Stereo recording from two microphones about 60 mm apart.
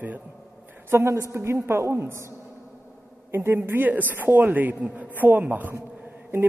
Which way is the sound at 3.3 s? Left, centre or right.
Right.